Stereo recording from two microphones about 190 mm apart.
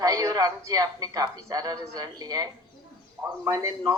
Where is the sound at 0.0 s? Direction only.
20° right (ahead or behind).